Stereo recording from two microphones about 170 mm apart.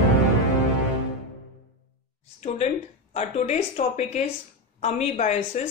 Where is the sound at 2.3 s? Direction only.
40° left (ahead or behind).